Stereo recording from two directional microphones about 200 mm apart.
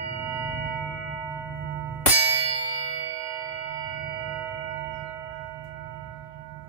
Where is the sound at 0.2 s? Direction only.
10° right (ahead or behind).